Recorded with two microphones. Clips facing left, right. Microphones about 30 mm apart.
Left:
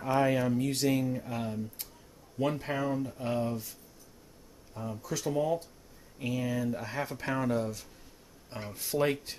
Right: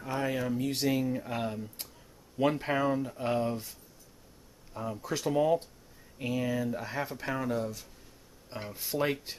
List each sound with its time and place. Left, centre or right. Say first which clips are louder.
0.2 s speech: left 2 dB; centre
4.7 s speech: right 2 dB; right
6.1 s speech: right 1 dB; centre